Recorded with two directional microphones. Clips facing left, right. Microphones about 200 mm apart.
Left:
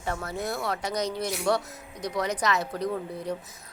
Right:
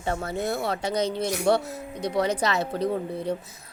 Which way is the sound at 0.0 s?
25° right (ahead or behind).